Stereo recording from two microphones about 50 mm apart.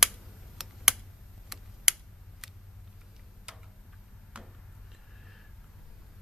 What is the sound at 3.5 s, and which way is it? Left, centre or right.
Tick-tock, centre.